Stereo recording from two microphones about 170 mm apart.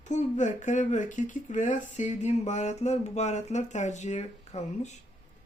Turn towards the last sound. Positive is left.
turn(degrees=40)  # may be behind; listen again after turning